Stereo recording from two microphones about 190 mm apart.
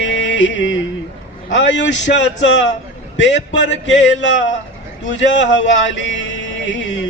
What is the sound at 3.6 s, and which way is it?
Speech, 75° left (ahead or behind).